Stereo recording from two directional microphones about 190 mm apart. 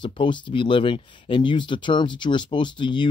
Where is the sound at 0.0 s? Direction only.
25° left (ahead or behind).